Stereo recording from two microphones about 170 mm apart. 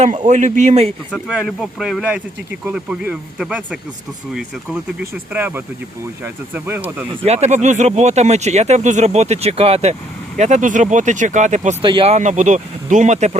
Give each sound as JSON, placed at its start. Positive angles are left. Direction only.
{"t": 0.3, "sound": "speech", "side_deg": -45}
{"t": 1.1, "sound": "speech", "side_deg": -5}
{"t": 5.3, "sound": "speech", "side_deg": -10}
{"t": 7.3, "sound": "speech", "side_deg": -40}
{"t": 11.8, "sound": "speech", "side_deg": -30}